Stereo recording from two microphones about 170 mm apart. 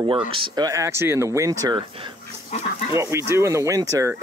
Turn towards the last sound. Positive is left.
turn(degrees=-20)  # may be behind; listen again after turning